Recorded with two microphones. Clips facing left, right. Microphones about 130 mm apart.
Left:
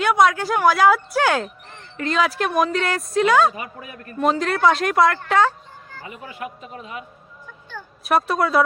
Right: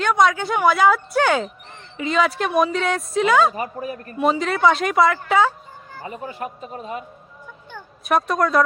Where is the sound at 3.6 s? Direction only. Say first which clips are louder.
Right 7 dB; 40° right (ahead or behind).